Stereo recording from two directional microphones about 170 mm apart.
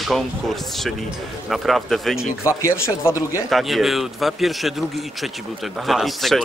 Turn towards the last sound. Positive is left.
turn(degrees=0)  # may be behind; listen again after turning